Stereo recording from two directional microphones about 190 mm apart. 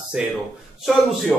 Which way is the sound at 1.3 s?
Centre (ahead or behind).